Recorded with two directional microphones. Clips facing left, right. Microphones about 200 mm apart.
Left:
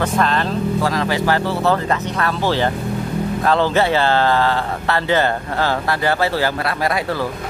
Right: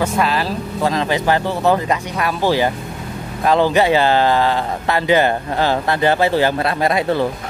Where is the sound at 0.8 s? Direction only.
20° right (ahead or behind).